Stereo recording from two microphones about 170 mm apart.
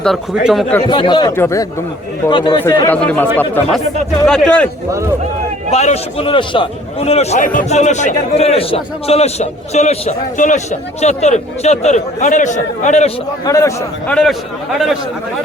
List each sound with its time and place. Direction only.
0.0 s a man's voice: centre (ahead or behind)
0.8 s speech: 25° left (ahead or behind)
2.8 s a man's voice: 10° left (ahead or behind)
5.7 s a man's voice: 40° left (ahead or behind)
13.4 s speech: 20° left (ahead or behind)
14.1 s a man's voice: 5° left (ahead or behind)